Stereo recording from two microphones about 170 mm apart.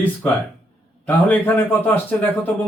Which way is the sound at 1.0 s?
10° left (ahead or behind).